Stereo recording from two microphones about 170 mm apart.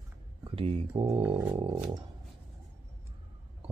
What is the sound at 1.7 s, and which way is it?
Speech, 20° right (ahead or behind).